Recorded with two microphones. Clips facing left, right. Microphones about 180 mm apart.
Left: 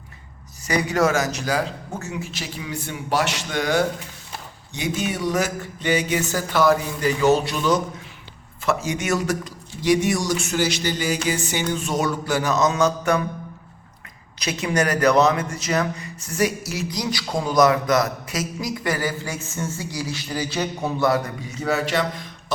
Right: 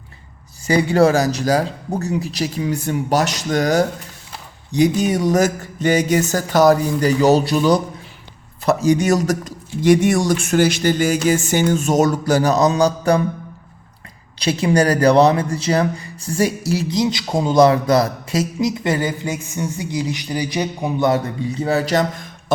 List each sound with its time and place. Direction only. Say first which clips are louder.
0.7 s a man's voice: right 6 dB; 30° right (ahead or behind)
14.3 s speech: right 6 dB; 30° right (ahead or behind)
21.5 s a man's voice: right 4 dB; 35° right (ahead or behind)